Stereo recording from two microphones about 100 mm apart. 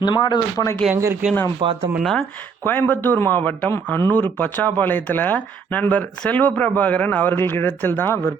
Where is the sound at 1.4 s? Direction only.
60° right (ahead or behind).